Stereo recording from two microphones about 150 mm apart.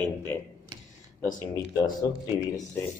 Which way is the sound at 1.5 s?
25° left (ahead or behind).